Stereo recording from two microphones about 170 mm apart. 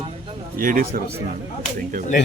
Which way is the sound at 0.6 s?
55° right (ahead or behind).